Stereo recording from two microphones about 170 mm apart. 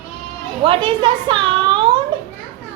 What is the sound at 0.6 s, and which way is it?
A woman's voice, 30° right (ahead or behind).